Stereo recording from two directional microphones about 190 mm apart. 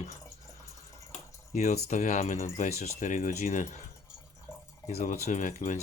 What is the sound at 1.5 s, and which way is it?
Speech, 35° left (ahead or behind).